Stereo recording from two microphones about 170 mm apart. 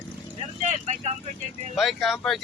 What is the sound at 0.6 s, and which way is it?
Speech, 45° right (ahead or behind).